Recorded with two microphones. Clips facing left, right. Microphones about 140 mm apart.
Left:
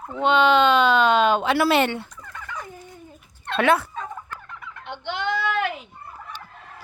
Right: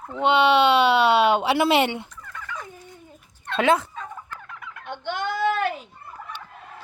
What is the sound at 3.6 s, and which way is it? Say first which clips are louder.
Speech: even; 20° right (ahead or behind).